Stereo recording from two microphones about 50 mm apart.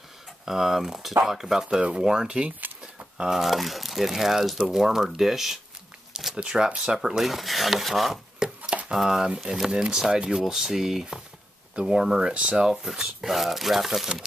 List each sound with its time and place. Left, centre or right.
0.5 s speech: centre
1.8 s speech: right
3.2 s speech: centre
7.0 s speech: centre
8.4 s chopping: right
8.9 s speech: centre